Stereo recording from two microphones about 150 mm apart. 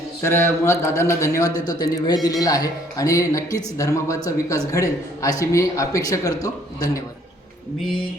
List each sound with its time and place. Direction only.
0.2 s speech: 15° left (ahead or behind)